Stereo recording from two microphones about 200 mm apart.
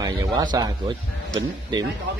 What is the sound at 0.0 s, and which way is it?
Speech, 20° right (ahead or behind).